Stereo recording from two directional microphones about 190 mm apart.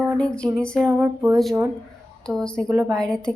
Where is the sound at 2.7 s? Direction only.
20° right (ahead or behind).